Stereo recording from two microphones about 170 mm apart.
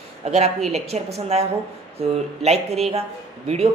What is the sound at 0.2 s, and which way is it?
A woman's voice, 40° right (ahead or behind).